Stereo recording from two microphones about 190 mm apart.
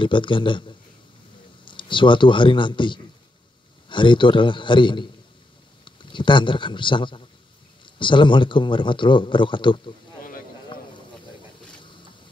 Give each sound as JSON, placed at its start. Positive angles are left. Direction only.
{"t": 0.0, "sound": "a man's voice", "side_deg": 25}